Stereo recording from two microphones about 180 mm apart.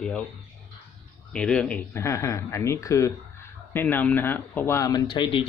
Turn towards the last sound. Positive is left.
turn(degrees=25)  # may be behind; listen again after turning